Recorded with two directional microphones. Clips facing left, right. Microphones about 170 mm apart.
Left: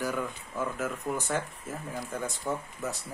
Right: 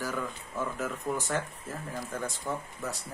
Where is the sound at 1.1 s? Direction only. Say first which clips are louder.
Even; 15° left (ahead or behind).